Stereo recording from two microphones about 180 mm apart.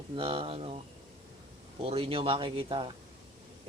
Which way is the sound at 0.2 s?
30° right (ahead or behind).